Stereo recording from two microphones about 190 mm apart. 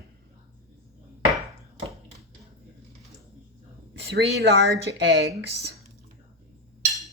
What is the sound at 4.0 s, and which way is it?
A woman's voice, 60° right (ahead or behind).